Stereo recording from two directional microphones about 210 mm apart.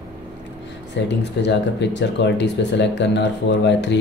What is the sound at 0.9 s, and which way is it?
Speech, 55° left (ahead or behind).